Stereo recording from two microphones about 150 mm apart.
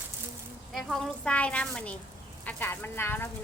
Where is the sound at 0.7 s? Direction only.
Centre (ahead or behind).